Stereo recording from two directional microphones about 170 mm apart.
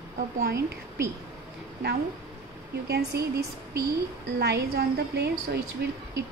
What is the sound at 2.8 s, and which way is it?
Speech, 75° right (ahead or behind).